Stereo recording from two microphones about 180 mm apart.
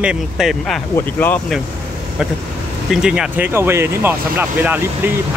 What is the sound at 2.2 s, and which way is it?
Speech, 5° right (ahead or behind).